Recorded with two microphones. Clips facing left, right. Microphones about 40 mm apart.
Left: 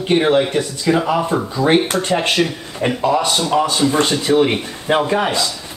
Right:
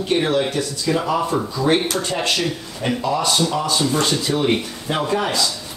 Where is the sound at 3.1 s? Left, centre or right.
Centre.